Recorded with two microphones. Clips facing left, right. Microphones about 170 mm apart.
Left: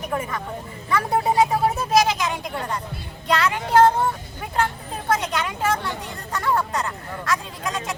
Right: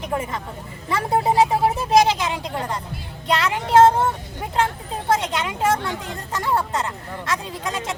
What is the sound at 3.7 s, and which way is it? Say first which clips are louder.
Speech: right 2 dB; 25° right (ahead or behind).